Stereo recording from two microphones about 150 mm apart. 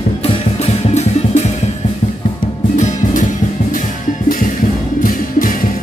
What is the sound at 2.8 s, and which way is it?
Music, 55° left (ahead or behind).